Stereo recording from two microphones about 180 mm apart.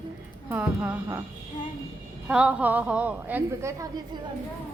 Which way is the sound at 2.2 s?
5° right (ahead or behind).